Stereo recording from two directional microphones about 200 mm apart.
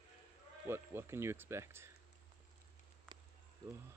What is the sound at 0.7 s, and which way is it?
Speech, 10° right (ahead or behind).